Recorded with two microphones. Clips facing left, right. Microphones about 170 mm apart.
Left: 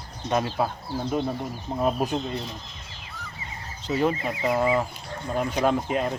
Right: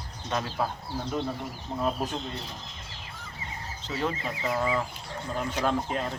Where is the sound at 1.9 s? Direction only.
15° left (ahead or behind).